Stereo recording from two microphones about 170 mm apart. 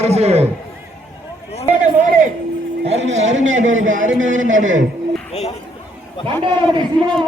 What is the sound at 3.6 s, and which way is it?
Speech, 45° right (ahead or behind).